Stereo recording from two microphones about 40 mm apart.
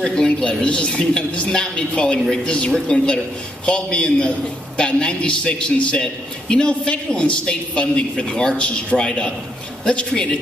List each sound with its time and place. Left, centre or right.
0.0 s speech: centre
0.4 s a man's voice: left
2.1 s speech: centre
2.4 s a man's voice: left